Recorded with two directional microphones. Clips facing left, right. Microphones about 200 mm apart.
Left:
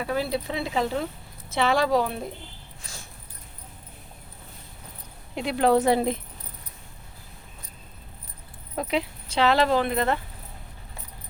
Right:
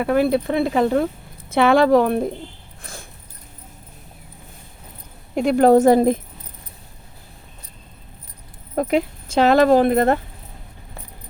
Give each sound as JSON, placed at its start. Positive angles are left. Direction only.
{"t": 0.0, "sound": "speech", "side_deg": -55}
{"t": 2.8, "sound": "a sound", "side_deg": -55}
{"t": 5.3, "sound": "speech", "side_deg": -45}
{"t": 8.7, "sound": "speech", "side_deg": -50}